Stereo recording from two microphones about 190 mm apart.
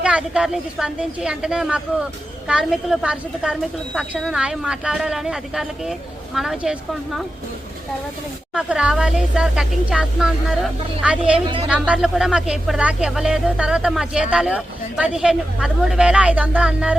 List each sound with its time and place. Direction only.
0.0 s speech: 5° right (ahead or behind)
8.5 s speech: 5° right (ahead or behind)
11.4 s a woman's voice: 25° right (ahead or behind)
11.7 s speech: 5° right (ahead or behind)